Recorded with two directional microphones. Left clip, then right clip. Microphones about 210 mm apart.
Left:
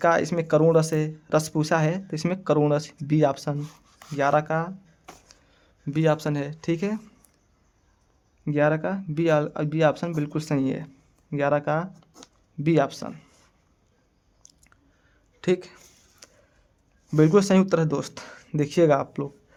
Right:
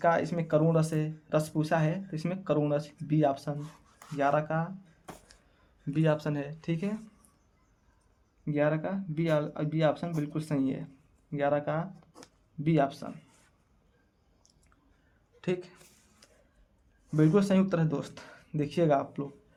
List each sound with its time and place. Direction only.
0.0 s speech: 45° left (ahead or behind)
8.4 s speech: 50° left (ahead or behind)
11.9 s a sound: 15° left (ahead or behind)
12.6 s speech: 50° left (ahead or behind)
14.4 s chewing: 35° left (ahead or behind)
15.4 s speech: 45° left (ahead or behind)
16.2 s a sound: 50° left (ahead or behind)
17.2 s speech: 50° left (ahead or behind)